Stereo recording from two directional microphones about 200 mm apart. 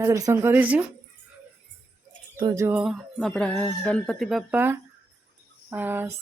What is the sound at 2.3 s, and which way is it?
A woman's voice, 20° right (ahead or behind).